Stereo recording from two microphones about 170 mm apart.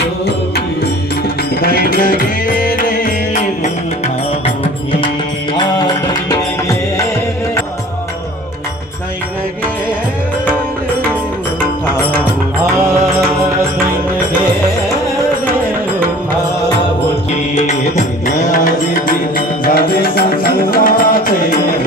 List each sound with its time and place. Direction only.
1.6 s music: 60° left (ahead or behind)
5.6 s music: 25° left (ahead or behind)
17.6 s music: 45° left (ahead or behind)